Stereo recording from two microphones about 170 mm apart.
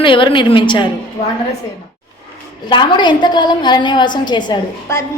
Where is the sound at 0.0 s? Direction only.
30° left (ahead or behind).